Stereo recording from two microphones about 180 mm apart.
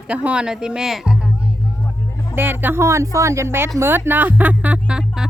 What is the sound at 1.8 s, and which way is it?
Vehicle, 15° left (ahead or behind).